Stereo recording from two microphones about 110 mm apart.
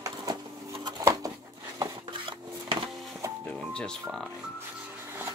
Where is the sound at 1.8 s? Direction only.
45° right (ahead or behind).